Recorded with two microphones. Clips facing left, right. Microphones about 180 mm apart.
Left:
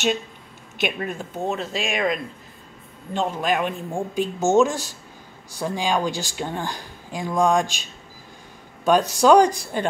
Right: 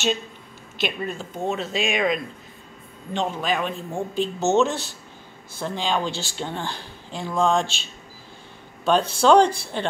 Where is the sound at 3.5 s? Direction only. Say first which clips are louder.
Left 2 dB; 10° left (ahead or behind).